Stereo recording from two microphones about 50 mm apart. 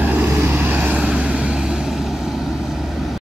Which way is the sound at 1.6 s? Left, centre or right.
Centre.